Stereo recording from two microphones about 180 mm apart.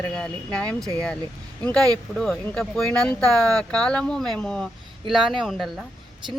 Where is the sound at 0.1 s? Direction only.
5° left (ahead or behind).